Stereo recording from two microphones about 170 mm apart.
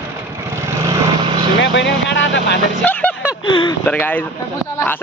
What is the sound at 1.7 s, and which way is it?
Speech, 90° left.